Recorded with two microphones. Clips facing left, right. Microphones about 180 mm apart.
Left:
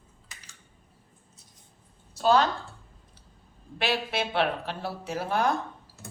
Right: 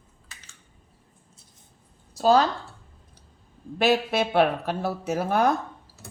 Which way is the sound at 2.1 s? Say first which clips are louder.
Right 3 dB; 40° right (ahead or behind).